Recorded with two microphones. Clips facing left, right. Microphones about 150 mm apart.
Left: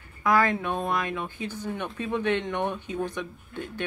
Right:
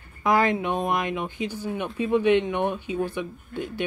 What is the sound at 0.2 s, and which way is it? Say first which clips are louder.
A man's voice: right 2 dB; 20° right (ahead or behind).